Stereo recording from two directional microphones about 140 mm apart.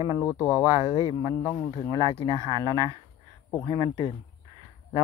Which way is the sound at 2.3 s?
30° right (ahead or behind).